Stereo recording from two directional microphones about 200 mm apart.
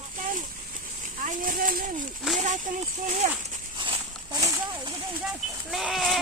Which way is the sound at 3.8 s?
20° right (ahead or behind).